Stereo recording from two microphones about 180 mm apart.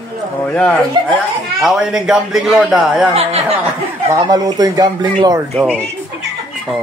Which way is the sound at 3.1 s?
35° right (ahead or behind).